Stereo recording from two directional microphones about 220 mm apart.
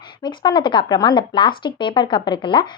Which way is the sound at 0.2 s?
20° left (ahead or behind).